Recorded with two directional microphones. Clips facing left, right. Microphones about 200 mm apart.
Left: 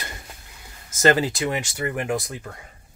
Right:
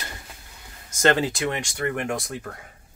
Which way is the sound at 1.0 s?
Centre (ahead or behind).